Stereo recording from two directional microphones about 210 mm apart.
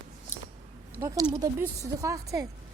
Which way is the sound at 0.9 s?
15° right (ahead or behind).